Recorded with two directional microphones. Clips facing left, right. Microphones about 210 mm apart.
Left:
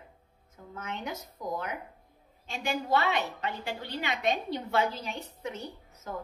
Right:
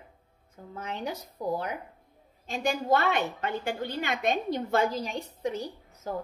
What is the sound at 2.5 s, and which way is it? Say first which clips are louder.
A woman's voice: right 3 dB; 45° right (ahead or behind).